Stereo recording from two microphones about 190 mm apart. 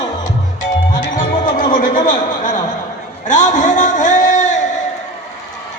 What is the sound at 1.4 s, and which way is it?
Music, 45° left (ahead or behind).